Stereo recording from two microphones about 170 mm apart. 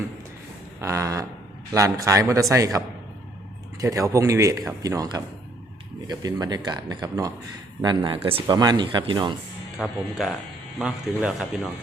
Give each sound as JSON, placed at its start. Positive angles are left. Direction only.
{"t": 0.8, "sound": "speech", "side_deg": -20}
{"t": 9.7, "sound": "speech", "side_deg": -5}